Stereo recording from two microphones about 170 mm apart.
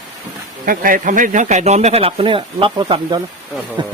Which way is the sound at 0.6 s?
55° right (ahead or behind).